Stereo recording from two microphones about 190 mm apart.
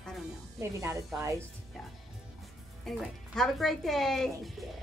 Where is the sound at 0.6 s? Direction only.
15° right (ahead or behind).